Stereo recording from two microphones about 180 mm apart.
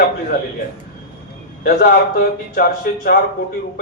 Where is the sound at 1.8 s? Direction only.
60° left (ahead or behind).